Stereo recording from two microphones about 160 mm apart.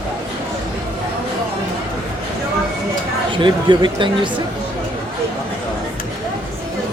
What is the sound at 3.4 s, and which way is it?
Speech, 30° right (ahead or behind).